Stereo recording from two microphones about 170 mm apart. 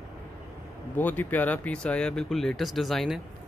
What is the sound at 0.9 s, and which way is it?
Speech, 10° left (ahead or behind).